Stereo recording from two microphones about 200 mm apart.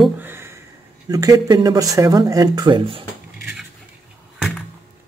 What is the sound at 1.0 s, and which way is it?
Speech, 20° right (ahead or behind).